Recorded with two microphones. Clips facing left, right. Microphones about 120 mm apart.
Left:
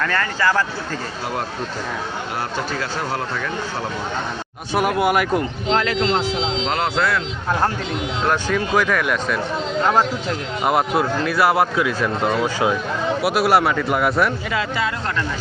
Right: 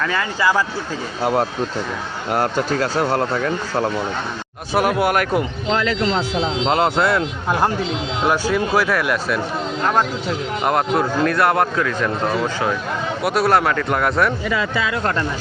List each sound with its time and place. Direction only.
0.0 s speech: 10° right (ahead or behind)
1.2 s speech: 50° right (ahead or behind)
4.7 s speech: centre (ahead or behind)
6.7 s speech: 25° right (ahead or behind)
8.2 s speech: 10° right (ahead or behind)